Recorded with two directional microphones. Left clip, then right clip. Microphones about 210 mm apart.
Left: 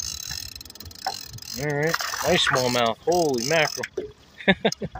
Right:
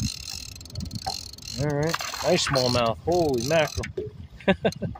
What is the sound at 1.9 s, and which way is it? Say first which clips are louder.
Mechanisms: left 3 dB; 10° left (ahead or behind).